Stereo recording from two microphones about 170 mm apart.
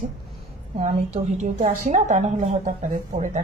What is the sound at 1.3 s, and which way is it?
A woman's voice, 45° right (ahead or behind).